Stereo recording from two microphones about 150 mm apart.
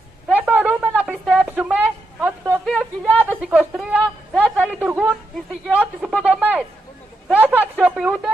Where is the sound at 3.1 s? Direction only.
10° left (ahead or behind).